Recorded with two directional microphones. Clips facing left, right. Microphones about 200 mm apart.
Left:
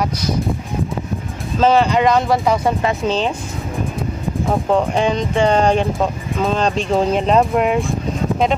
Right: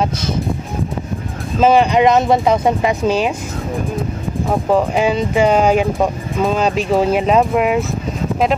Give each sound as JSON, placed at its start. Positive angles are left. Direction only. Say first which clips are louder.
{"t": 1.6, "sound": "speech", "louder": "right 2 dB", "side_deg": -15}
{"t": 4.5, "sound": "speech", "louder": "right 2 dB", "side_deg": -5}